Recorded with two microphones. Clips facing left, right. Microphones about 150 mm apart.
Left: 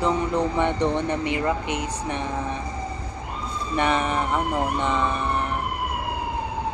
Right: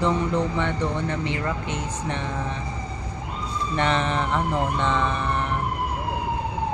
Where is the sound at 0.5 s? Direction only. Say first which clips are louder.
Left 3 dB; 15° left (ahead or behind).